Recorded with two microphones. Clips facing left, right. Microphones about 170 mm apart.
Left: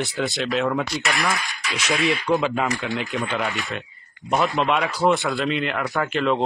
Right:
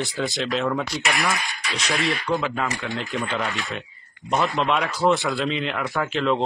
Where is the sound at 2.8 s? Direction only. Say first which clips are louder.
Left 2 dB; 5° left (ahead or behind).